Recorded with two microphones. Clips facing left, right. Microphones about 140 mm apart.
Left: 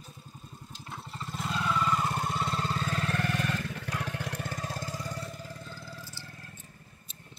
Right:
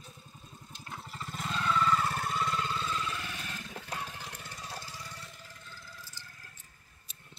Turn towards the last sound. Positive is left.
turn(degrees=35)  # may be behind; listen again after turning